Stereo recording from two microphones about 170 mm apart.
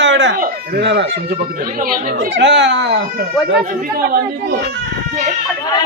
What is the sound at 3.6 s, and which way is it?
Speech, 55° right (ahead or behind).